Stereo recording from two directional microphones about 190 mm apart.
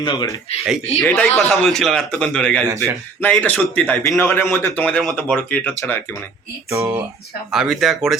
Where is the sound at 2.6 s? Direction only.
15° right (ahead or behind).